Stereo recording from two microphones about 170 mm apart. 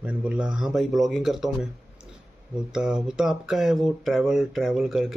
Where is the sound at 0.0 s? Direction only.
5° right (ahead or behind).